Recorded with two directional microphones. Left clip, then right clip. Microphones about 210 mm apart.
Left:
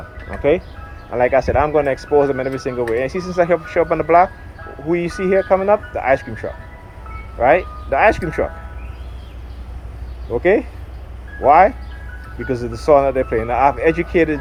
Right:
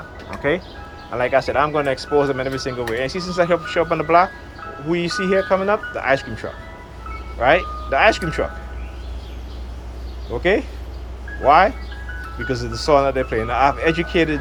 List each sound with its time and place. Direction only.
1.1 s speech: 40° left (ahead or behind)
10.3 s speech: 35° left (ahead or behind)